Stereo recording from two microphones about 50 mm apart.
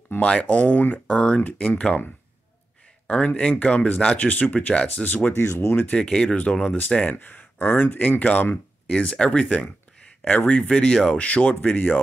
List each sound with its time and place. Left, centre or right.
0.2 s speech: left
1.0 s speech: left
3.1 s speech: left
5.3 s speech: left
6.0 s speech: centre
7.1 s speech: left
8.8 s speech: left